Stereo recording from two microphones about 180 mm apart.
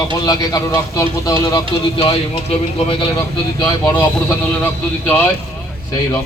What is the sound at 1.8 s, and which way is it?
A man's voice, 30° left (ahead or behind).